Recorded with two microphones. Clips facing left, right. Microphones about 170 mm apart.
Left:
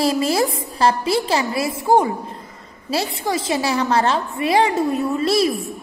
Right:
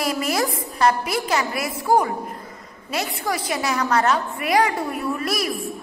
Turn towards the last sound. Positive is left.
turn(degrees=25)  # may be behind; listen again after turning